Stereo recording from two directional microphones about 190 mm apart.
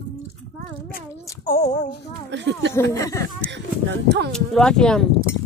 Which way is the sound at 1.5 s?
35° left (ahead or behind).